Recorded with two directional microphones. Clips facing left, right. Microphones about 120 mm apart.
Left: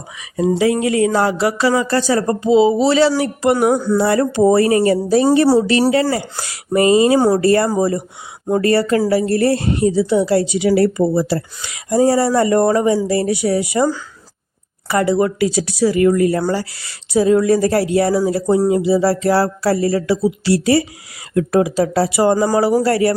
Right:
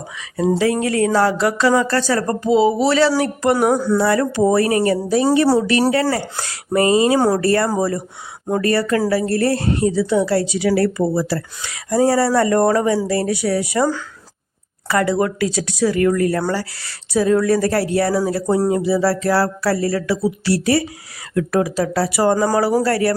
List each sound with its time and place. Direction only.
0.2 s a woman's voice: 15° left (ahead or behind)
3.5 s a sound: centre (ahead or behind)
4.0 s speech: 25° left (ahead or behind)
6.1 s a woman's voice: 10° left (ahead or behind)
8.5 s a woman's voice: 30° left (ahead or behind)
14.8 s a woman's voice: 15° left (ahead or behind)
18.5 s a sound: centre (ahead or behind)
18.9 s a woman's voice: 15° left (ahead or behind)